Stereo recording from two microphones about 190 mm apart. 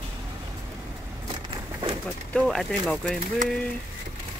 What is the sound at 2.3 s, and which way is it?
Speech, centre (ahead or behind).